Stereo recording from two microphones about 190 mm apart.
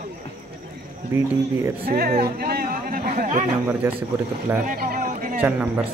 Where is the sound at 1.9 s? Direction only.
50° right (ahead or behind).